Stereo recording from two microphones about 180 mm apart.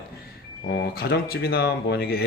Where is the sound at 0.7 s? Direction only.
70° left (ahead or behind).